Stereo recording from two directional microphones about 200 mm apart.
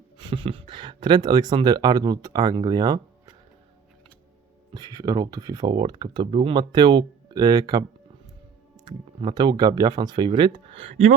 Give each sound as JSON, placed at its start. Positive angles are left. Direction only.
{"t": 0.2, "sound": "a sound", "side_deg": -25}
{"t": 1.0, "sound": "speech", "side_deg": -20}
{"t": 4.7, "sound": "speech", "side_deg": -20}
{"t": 8.9, "sound": "speech", "side_deg": -20}